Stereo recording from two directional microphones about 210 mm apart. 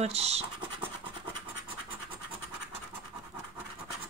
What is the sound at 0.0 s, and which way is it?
Speech, 30° right (ahead or behind).